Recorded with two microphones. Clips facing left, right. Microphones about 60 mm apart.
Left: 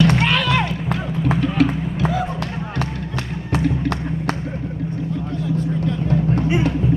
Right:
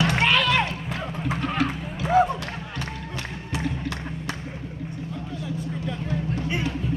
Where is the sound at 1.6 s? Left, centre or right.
Left.